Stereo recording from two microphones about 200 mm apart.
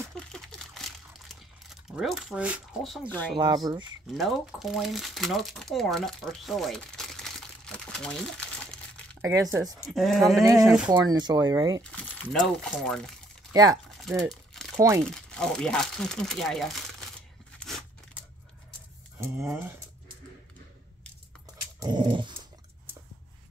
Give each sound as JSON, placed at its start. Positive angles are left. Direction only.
{"t": 0.2, "sound": "crumpling", "side_deg": 5}
{"t": 3.3, "sound": "speech", "side_deg": -20}
{"t": 4.1, "sound": "speech", "side_deg": 0}
{"t": 9.2, "sound": "speech", "side_deg": -15}
{"t": 9.8, "sound": "speech", "side_deg": 0}
{"t": 10.4, "sound": "speech", "side_deg": -15}
{"t": 11.8, "sound": "speech", "side_deg": 5}
{"t": 13.5, "sound": "speech", "side_deg": -20}
{"t": 13.8, "sound": "a sound", "side_deg": 0}
{"t": 14.3, "sound": "crumpling", "side_deg": 0}
{"t": 15.0, "sound": "speech", "side_deg": 5}
{"t": 17.5, "sound": "a sound", "side_deg": 5}
{"t": 19.1, "sound": "speech", "side_deg": -15}
{"t": 21.7, "sound": "speech", "side_deg": -20}